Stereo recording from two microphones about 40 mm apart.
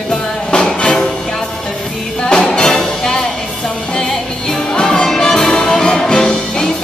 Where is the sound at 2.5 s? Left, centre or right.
Centre.